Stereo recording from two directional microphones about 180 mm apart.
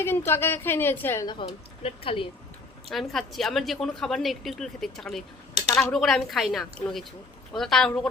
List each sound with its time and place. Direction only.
0.0 s a woman's voice: 10° left (ahead or behind); by 2.2 s 30° left (ahead or behind)
2.9 s a woman's voice: centre (ahead or behind)